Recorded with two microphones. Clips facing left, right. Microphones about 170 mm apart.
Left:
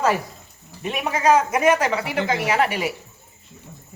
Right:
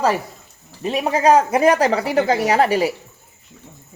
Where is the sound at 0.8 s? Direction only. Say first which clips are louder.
Right 5 dB; 35° right (ahead or behind).